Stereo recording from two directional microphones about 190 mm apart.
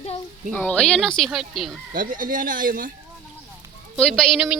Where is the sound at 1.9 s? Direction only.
45° right (ahead or behind).